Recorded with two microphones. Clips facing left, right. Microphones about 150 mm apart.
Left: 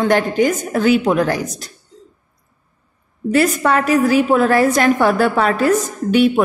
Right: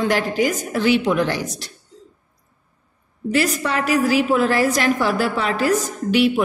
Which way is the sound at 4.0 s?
50° left (ahead or behind).